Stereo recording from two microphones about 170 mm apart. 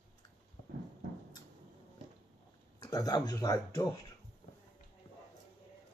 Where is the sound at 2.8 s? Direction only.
20° left (ahead or behind).